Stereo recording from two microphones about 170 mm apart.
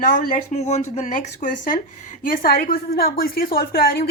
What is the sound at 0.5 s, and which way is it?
A woman's voice, 40° left (ahead or behind).